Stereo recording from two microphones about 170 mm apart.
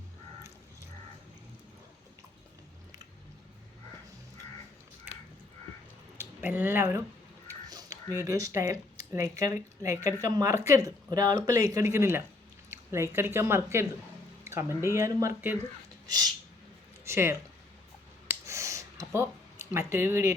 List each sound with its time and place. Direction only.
6.1 s speech: 10° right (ahead or behind)
18.3 s a sound: 15° right (ahead or behind)
19.9 s speech: 15° right (ahead or behind)